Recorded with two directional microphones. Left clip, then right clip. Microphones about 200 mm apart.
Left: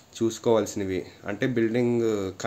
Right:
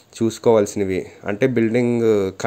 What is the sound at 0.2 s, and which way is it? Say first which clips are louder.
Speech: right 7 dB; 35° right (ahead or behind).